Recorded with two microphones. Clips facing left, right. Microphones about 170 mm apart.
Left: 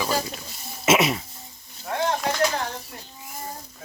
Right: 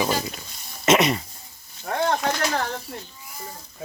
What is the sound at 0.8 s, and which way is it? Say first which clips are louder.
Speech: right 1 dB; 5° left (ahead or behind).